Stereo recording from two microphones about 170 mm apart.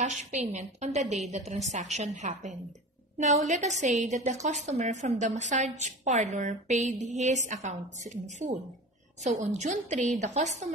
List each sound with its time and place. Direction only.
0.0 s a woman's voice: 45° right (ahead or behind)